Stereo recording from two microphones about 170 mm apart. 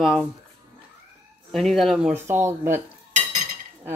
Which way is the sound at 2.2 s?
15° right (ahead or behind).